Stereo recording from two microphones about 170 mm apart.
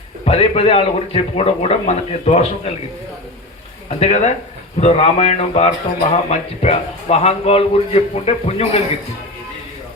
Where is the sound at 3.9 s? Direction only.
40° left (ahead or behind).